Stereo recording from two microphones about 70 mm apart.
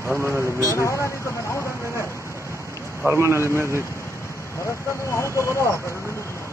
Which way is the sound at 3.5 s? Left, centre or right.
Left.